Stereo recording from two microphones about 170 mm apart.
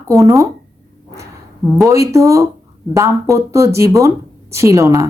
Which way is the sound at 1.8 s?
15° right (ahead or behind).